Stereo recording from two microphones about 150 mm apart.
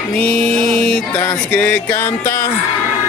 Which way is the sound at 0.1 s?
5° left (ahead or behind).